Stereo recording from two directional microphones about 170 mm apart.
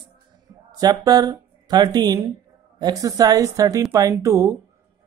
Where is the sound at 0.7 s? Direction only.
20° right (ahead or behind).